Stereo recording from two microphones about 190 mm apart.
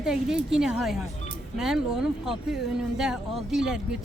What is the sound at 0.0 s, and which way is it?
A woman's voice, 5° right (ahead or behind).